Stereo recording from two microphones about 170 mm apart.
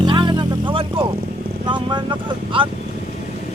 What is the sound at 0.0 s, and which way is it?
Vehicle, 25° right (ahead or behind).